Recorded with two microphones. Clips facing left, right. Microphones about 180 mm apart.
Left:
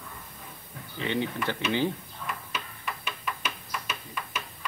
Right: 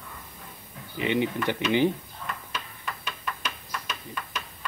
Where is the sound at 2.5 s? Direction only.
5° left (ahead or behind).